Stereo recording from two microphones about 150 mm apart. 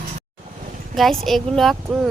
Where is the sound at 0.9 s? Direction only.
Centre (ahead or behind).